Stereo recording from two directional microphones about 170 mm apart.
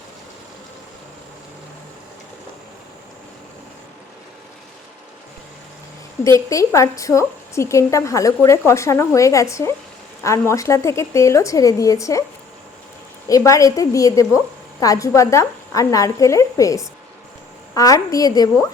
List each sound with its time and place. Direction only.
6.5 s a woman's voice: 20° left (ahead or behind)
13.2 s a woman's voice: 20° left (ahead or behind)